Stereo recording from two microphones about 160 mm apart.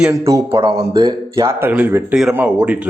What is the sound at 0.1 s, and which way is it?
A man's voice, 20° right (ahead or behind).